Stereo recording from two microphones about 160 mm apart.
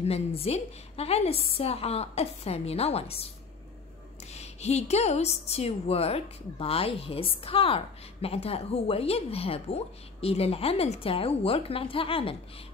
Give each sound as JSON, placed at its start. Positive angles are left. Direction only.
{"t": 0.0, "sound": "a woman's voice", "side_deg": 40}
{"t": 4.3, "sound": "a woman's voice", "side_deg": 40}